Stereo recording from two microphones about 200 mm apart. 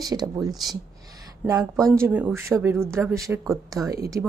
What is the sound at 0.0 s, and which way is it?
Speech, 20° right (ahead or behind).